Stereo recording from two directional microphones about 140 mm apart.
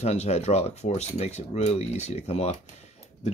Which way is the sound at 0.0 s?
50° left (ahead or behind).